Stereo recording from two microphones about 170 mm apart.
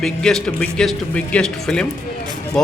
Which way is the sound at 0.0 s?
5° left (ahead or behind).